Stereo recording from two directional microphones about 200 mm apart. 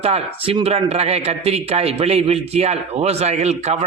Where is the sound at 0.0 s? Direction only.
30° right (ahead or behind).